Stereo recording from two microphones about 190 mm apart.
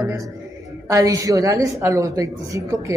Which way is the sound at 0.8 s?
15° right (ahead or behind).